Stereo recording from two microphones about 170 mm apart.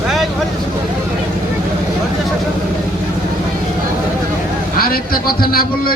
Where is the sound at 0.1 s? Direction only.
Centre (ahead or behind).